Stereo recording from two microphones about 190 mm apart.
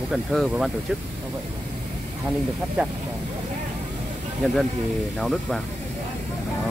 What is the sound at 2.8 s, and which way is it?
Speech, 10° right (ahead or behind).